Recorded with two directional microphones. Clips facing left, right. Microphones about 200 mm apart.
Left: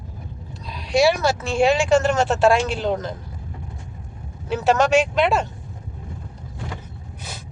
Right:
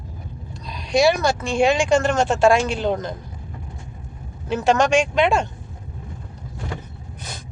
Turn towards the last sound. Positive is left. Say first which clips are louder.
# right 1 dB
turn(degrees=5)  # may be behind; listen again after turning